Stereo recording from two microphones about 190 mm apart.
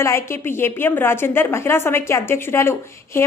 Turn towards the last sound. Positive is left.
turn(degrees=15)  # may be behind; listen again after turning